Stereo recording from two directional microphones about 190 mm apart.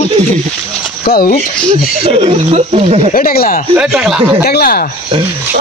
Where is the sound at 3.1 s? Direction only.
50° left (ahead or behind).